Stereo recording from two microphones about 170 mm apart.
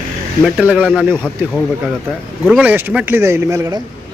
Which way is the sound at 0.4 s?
5° right (ahead or behind).